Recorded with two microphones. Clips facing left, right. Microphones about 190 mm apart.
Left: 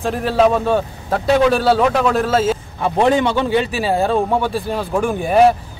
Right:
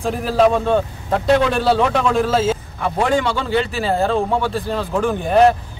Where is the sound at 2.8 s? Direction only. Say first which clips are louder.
Left 4 dB; 20° left (ahead or behind).